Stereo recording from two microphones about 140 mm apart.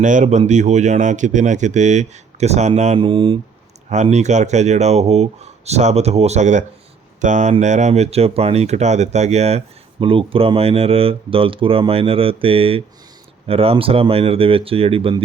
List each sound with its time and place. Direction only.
0.0 s speech: 60° right (ahead or behind)
3.0 s speech: 40° right (ahead or behind)
3.8 s speech: 55° right (ahead or behind)